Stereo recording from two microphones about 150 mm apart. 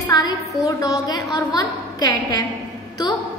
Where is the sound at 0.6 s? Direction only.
25° left (ahead or behind).